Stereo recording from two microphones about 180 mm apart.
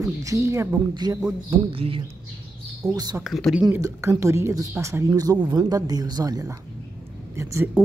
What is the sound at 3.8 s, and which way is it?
Speech, 15° right (ahead or behind).